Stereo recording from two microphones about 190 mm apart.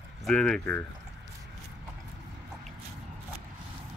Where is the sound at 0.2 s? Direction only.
5° left (ahead or behind).